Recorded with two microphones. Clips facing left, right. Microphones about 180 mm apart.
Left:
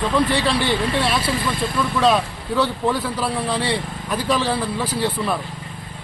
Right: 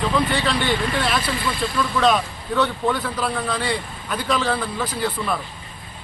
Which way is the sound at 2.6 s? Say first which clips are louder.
Left 1 dB; 30° left (ahead or behind).